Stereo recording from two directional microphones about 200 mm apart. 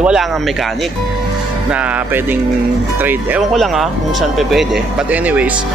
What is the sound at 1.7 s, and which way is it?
Speech, 5° right (ahead or behind).